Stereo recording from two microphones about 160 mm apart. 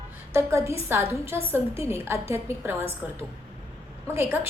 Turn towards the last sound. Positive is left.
turn(degrees=-15)  # may be behind; listen again after turning